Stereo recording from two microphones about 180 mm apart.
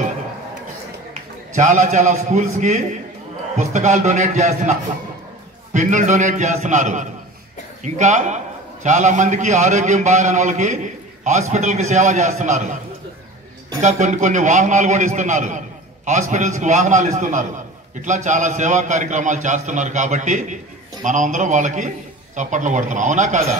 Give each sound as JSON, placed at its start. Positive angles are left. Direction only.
{"t": 1.5, "sound": "a man's voice", "side_deg": -45}
{"t": 13.8, "sound": "a man's voice", "side_deg": -40}